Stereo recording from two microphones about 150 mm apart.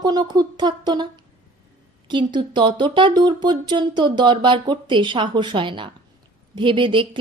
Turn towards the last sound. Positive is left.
turn(degrees=-35)  # may be behind; listen again after turning